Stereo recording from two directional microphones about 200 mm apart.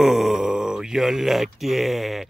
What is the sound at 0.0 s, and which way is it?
Speech, centre (ahead or behind).